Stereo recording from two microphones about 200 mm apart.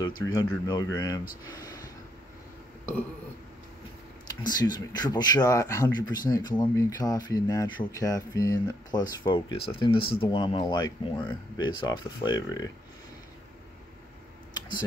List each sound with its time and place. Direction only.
0.0 s speech: 20° left (ahead or behind)
4.3 s speech: 20° left (ahead or behind)